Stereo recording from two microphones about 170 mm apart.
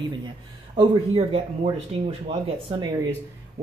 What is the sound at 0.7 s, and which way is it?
Speech, 35° right (ahead or behind).